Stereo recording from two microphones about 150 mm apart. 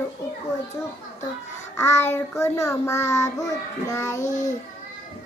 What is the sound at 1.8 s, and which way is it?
Child singing, 15° left (ahead or behind).